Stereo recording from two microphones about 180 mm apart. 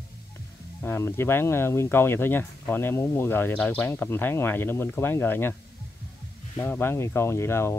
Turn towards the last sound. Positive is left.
turn(degrees=15)  # may be behind; listen again after turning